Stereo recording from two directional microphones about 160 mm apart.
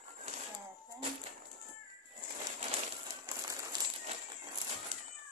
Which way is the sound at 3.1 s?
20° right (ahead or behind).